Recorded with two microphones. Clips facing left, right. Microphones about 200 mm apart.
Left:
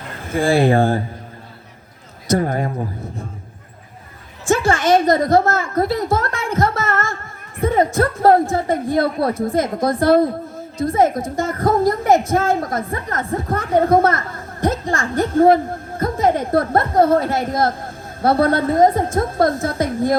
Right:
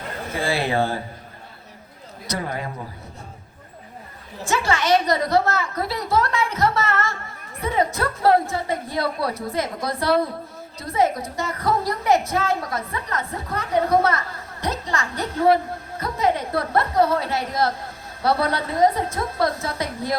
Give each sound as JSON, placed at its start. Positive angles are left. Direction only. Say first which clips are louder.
{"t": 0.3, "sound": "a woman's voice", "louder": "left 9 dB", "side_deg": 50}
{"t": 2.2, "sound": "a woman's voice", "louder": "left 9 dB", "side_deg": 50}
{"t": 4.4, "sound": "a woman's voice", "louder": "left 5 dB", "side_deg": 50}